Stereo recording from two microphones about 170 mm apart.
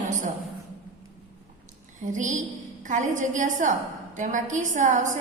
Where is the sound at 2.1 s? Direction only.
45° right (ahead or behind).